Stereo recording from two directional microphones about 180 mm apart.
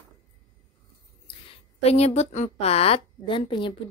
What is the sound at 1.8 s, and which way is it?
A woman's voice, 35° left (ahead or behind).